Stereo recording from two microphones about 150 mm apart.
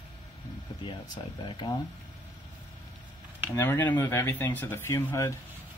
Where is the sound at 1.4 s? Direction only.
30° left (ahead or behind).